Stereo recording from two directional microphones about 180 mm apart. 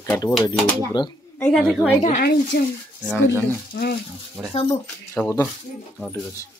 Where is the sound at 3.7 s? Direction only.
65° left (ahead or behind).